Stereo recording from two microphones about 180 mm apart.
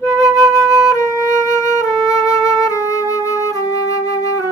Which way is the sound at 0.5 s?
15° left (ahead or behind).